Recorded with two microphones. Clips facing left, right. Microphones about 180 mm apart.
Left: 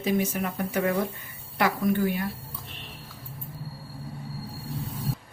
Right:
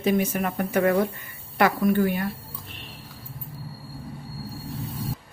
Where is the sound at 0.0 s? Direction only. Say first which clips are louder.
Right 3 dB; 55° right (ahead or behind).